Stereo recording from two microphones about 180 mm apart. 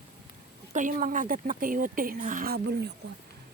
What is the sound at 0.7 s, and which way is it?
Speech, 45° right (ahead or behind).